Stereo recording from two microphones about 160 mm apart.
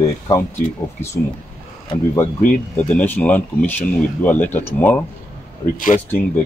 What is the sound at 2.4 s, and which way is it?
Speech, 50° left (ahead or behind).